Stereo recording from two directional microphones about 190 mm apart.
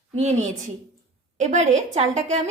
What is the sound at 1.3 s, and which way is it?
A woman's voice, 40° right (ahead or behind).